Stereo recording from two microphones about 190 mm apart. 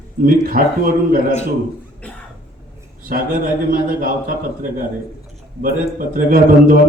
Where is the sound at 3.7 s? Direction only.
50° right (ahead or behind).